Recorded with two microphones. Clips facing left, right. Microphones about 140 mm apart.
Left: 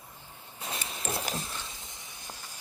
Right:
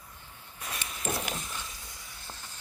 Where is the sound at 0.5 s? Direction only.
25° left (ahead or behind).